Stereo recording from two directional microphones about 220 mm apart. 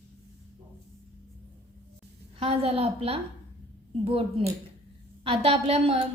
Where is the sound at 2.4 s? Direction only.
25° right (ahead or behind).